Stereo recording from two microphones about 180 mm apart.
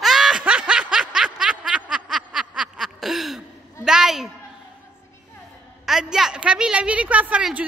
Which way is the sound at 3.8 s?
5° right (ahead or behind).